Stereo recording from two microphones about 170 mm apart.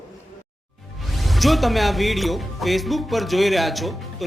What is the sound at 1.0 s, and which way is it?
Speech, centre (ahead or behind).